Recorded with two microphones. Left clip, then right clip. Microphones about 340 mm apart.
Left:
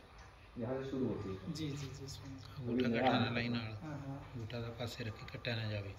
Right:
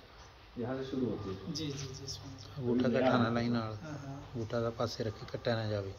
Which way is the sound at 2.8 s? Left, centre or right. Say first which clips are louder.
Right 3 dB; centre.